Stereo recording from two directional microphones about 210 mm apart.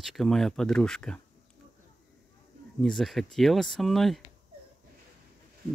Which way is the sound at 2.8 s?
Centre (ahead or behind).